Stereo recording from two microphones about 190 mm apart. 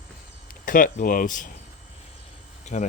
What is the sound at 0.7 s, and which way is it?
Speech, 45° left (ahead or behind).